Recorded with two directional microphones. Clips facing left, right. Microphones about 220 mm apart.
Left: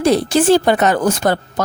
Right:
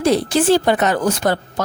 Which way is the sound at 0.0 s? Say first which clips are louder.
Left 2 dB; 45° left (ahead or behind).